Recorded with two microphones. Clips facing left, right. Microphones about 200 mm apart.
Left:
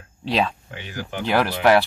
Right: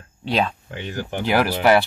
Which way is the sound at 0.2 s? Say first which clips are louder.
Even; centre (ahead or behind).